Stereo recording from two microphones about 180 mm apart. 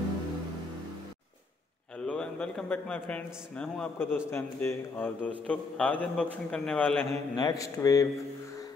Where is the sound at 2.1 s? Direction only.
5° left (ahead or behind).